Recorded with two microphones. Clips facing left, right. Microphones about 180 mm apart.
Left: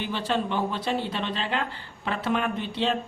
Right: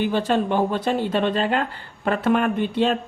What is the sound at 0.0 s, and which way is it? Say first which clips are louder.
Speech: right 7 dB; 45° right (ahead or behind).